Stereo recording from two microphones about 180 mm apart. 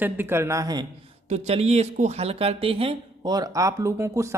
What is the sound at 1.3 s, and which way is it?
Speech, 35° right (ahead or behind).